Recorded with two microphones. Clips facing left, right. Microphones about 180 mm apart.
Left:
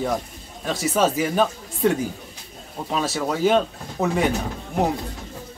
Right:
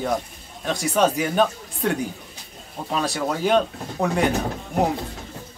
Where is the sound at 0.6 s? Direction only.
5° left (ahead or behind).